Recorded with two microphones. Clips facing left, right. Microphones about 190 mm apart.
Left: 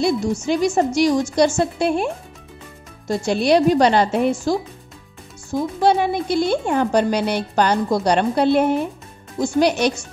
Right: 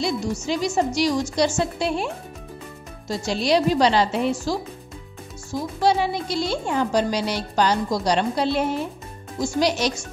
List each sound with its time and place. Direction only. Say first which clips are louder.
0.0 s speech: left 5 dB; 55° left (ahead or behind)
3.1 s speech: left 5 dB; 55° left (ahead or behind)